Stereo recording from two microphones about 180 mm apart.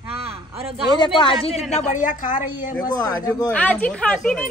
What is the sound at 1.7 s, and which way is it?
Speech, 40° left (ahead or behind).